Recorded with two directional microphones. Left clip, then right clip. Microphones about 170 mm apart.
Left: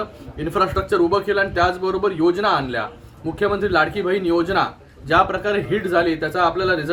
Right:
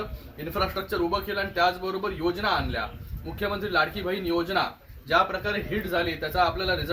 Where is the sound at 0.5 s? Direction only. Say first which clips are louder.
Left 9 dB; 35° left (ahead or behind).